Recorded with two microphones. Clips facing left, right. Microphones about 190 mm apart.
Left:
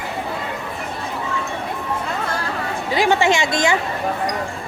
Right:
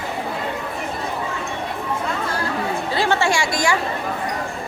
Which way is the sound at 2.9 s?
15° left (ahead or behind).